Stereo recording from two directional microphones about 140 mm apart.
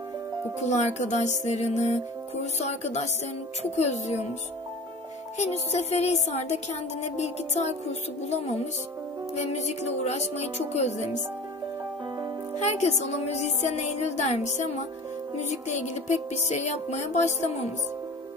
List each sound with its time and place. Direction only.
0.7 s speech: 55° left (ahead or behind)
2.6 s music: 55° left (ahead or behind)
5.4 s music: 50° left (ahead or behind)
9.4 s music: 55° left (ahead or behind)
12.5 s speech: 50° left (ahead or behind)
15.7 s speech: 55° left (ahead or behind)